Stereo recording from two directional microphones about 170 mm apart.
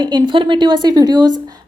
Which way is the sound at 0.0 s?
25° right (ahead or behind).